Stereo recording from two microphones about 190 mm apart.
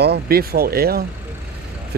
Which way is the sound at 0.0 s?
55° right (ahead or behind).